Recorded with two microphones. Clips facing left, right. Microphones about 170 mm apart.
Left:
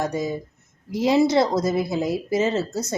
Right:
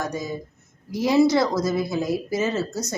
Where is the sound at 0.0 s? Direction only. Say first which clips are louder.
Left 3 dB; 25° left (ahead or behind).